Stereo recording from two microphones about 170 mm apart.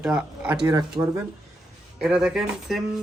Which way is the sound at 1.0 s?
35° right (ahead or behind).